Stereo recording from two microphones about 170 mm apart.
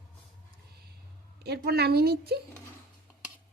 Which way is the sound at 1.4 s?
70° right (ahead or behind).